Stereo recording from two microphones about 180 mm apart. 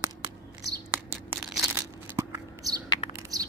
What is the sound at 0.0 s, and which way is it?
Tearing, 15° right (ahead or behind).